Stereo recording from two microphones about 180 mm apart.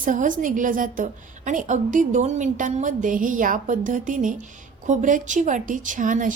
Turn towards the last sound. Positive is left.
turn(degrees=-45)  # may be behind; listen again after turning